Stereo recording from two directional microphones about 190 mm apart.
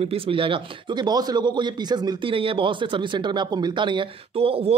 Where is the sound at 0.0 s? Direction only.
30° right (ahead or behind).